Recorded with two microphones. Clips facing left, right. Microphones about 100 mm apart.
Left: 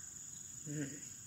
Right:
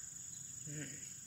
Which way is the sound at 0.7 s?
25° left (ahead or behind).